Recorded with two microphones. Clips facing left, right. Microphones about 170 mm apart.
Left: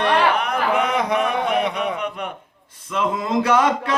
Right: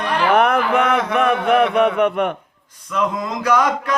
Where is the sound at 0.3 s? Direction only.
60° right (ahead or behind).